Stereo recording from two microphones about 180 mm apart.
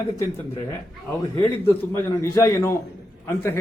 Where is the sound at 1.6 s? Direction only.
15° left (ahead or behind).